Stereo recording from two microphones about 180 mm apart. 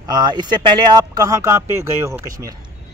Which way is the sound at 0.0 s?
25° right (ahead or behind).